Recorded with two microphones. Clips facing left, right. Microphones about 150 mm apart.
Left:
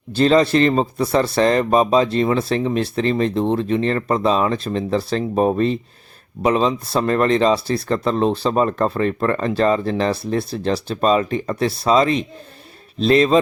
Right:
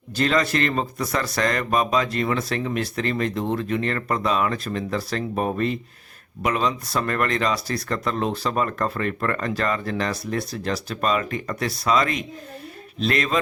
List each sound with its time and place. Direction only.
0.1 s speech: 30° left (ahead or behind)